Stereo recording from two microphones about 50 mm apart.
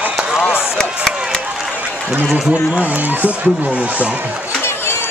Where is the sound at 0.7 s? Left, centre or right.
Centre.